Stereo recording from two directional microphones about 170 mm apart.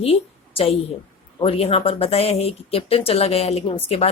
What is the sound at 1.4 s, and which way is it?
A woman's voice, 35° left (ahead or behind).